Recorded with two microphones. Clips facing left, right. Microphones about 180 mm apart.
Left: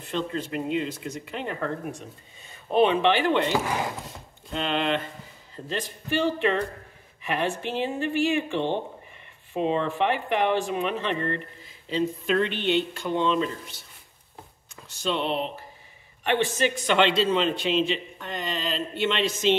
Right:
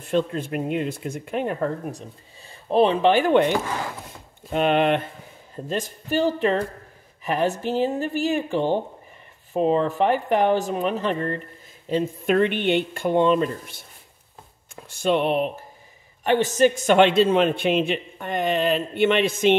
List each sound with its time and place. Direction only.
0.0 s speech: 50° right (ahead or behind)
3.6 s speech: 15° left (ahead or behind)
4.5 s a man's voice: 55° right (ahead or behind)
5.7 s speech: 45° right (ahead or behind)
11.9 s speech: 55° right (ahead or behind)
15.0 s a man's voice: 55° right (ahead or behind)
16.3 s a man's voice: 45° right (ahead or behind)